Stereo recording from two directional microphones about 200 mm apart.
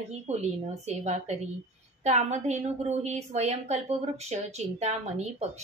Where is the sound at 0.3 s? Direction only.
35° right (ahead or behind).